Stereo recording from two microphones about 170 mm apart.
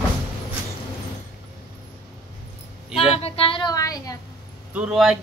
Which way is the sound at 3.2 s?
35° left (ahead or behind).